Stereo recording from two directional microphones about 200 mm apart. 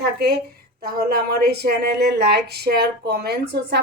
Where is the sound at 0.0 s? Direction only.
55° right (ahead or behind).